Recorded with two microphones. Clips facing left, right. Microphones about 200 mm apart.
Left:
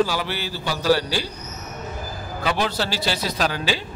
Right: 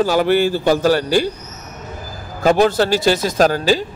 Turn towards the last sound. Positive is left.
turn(degrees=-45)  # may be behind; listen again after turning